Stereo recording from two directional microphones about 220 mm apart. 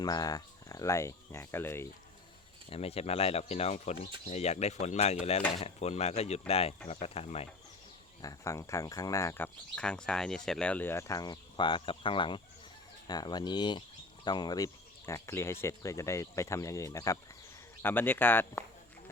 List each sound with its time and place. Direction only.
0.0 s speech: 15° left (ahead or behind)
2.6 s speech: 25° left (ahead or behind)
8.2 s speech: 15° left (ahead or behind)